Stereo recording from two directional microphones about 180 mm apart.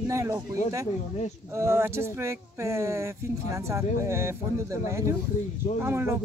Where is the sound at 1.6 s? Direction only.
15° right (ahead or behind).